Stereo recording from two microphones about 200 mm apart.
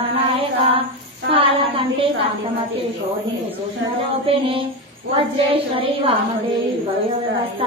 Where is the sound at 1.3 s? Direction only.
25° right (ahead or behind).